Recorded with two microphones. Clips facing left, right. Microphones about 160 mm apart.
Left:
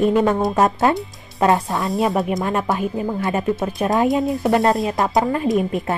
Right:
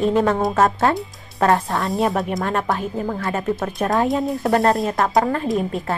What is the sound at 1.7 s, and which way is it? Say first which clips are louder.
Speech: left 1 dB; centre (ahead or behind).